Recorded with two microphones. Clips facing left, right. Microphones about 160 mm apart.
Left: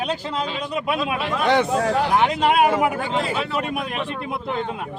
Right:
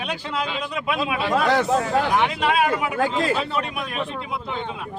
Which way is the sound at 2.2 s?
45° left (ahead or behind).